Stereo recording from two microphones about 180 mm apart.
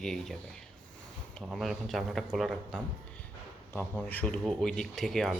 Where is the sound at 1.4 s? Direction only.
Centre (ahead or behind).